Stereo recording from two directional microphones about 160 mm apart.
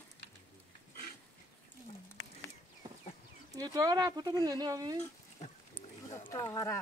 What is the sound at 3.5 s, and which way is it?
Speech, 25° right (ahead or behind).